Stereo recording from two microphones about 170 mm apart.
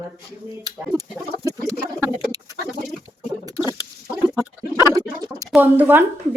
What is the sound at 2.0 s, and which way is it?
Bird, 20° right (ahead or behind).